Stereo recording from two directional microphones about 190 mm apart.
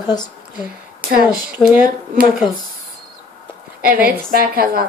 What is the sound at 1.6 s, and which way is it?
Speech, 5° left (ahead or behind).